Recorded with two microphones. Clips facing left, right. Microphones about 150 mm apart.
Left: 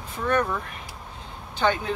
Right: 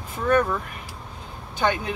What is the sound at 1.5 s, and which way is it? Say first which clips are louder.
Speech: even; 10° right (ahead or behind).